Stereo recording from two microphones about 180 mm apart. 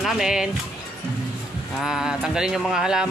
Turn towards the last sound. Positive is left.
turn(degrees=-5)  # may be behind; listen again after turning